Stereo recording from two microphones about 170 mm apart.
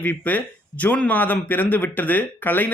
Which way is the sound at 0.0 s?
10° left (ahead or behind).